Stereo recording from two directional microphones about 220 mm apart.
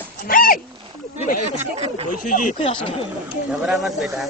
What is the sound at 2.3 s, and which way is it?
Speech, 35° left (ahead or behind).